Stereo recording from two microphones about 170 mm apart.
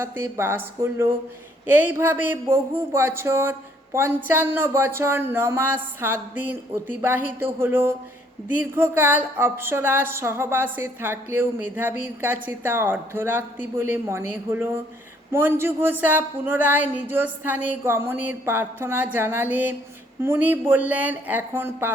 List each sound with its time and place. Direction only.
0.0 s a woman's voice: 15° right (ahead or behind)